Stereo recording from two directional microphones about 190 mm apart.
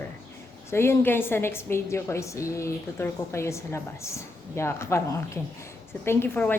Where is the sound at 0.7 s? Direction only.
15° left (ahead or behind).